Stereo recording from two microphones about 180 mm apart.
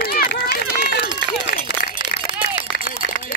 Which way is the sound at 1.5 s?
90° left.